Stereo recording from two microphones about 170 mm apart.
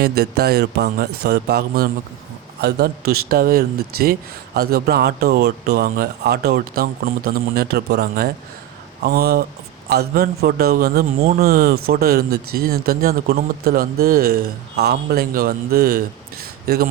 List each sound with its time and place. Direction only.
0.0 s speech: 70° right (ahead or behind)